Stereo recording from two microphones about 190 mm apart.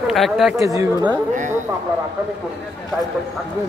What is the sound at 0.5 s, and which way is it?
Speech, 15° right (ahead or behind).